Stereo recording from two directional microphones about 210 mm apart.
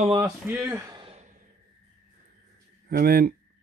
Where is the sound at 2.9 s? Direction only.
45° right (ahead or behind).